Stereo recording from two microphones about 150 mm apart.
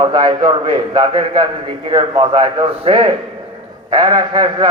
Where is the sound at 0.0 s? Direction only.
30° right (ahead or behind).